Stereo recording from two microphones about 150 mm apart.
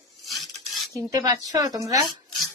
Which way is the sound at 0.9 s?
25° right (ahead or behind).